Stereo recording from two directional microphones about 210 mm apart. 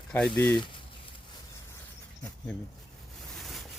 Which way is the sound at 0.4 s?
20° left (ahead or behind).